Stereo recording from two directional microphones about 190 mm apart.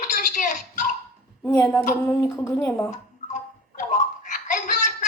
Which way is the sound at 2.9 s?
40° left (ahead or behind).